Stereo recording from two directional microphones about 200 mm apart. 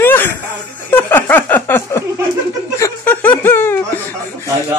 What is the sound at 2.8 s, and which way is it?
Chuckle, 10° left (ahead or behind).